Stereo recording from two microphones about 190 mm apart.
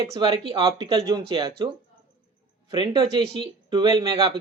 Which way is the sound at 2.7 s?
20° right (ahead or behind).